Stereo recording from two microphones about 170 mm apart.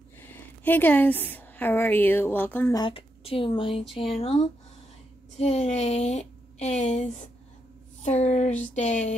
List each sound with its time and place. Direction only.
0.3 s a woman's voice: 10° left (ahead or behind)
2.7 s speech: 30° left (ahead or behind)